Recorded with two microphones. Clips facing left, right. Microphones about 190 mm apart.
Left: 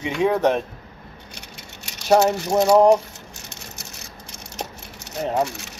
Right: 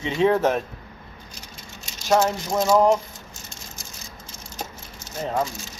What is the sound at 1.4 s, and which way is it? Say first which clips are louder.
Vehicle: left 1 dB; 65° left (ahead or behind).